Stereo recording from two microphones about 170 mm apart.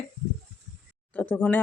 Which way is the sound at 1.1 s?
10° left (ahead or behind).